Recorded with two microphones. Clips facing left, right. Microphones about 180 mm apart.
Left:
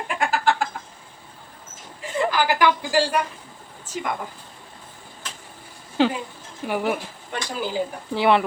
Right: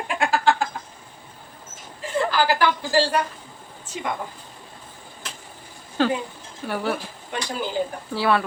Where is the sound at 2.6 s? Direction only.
15° left (ahead or behind).